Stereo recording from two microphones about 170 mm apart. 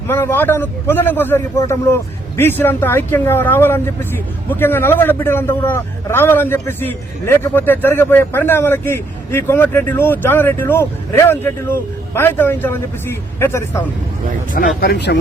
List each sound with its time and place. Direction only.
0.1 s a man's voice: 15° left (ahead or behind)
14.5 s speech: 60° left (ahead or behind); by 15.2 s 90° left